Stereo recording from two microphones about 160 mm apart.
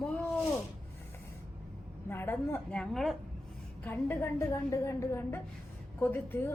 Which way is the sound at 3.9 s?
15° left (ahead or behind).